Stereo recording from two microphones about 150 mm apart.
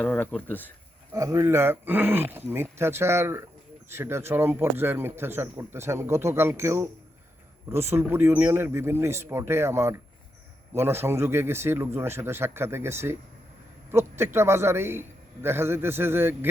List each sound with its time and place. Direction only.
0.0 s speech: 10° left (ahead or behind)
1.1 s a man's voice: 20° right (ahead or behind)
14.3 s a man's voice: 15° right (ahead or behind)